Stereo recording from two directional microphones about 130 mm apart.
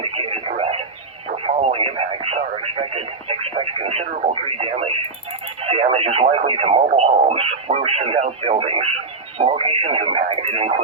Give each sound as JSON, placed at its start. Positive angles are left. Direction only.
{"t": 0.0, "sound": "radio", "side_deg": -45}
{"t": 1.5, "sound": "speech", "side_deg": -50}